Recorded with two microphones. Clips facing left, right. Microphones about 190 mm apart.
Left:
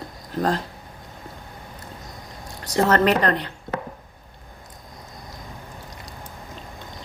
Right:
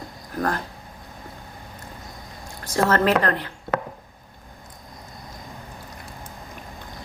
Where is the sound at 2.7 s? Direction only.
20° left (ahead or behind).